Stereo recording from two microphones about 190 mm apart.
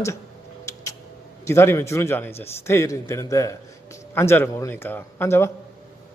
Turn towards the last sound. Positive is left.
turn(degrees=10)  # may be behind; listen again after turning